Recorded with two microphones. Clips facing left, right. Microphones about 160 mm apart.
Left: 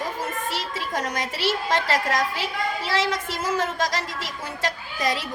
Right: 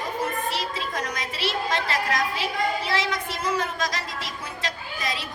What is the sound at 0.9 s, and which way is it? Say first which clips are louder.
Speech: left 3 dB; 45° left (ahead or behind).